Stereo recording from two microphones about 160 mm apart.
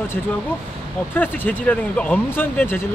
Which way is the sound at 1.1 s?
10° left (ahead or behind).